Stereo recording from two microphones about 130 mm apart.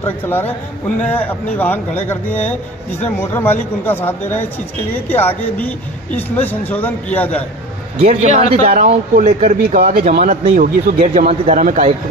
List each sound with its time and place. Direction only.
0.0 s speech: 15° left (ahead or behind)
8.0 s a man's voice: 55° right (ahead or behind)
10.5 s a man's voice: 90° right
11.1 s a man's voice: 70° right (ahead or behind)